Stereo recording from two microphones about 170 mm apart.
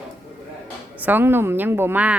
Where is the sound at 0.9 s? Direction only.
10° right (ahead or behind).